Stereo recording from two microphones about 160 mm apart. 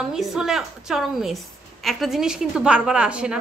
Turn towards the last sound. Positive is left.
turn(degrees=-5)  # may be behind; listen again after turning